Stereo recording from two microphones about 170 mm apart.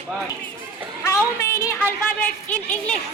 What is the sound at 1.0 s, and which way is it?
A woman's voice, 15° left (ahead or behind).